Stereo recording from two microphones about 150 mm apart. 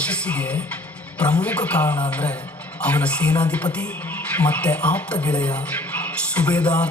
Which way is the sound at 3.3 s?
30° left (ahead or behind).